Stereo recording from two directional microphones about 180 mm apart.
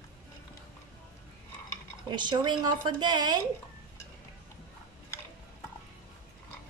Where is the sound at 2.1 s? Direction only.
25° right (ahead or behind).